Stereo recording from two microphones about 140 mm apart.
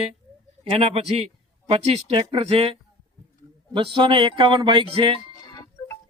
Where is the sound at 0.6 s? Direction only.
40° right (ahead or behind).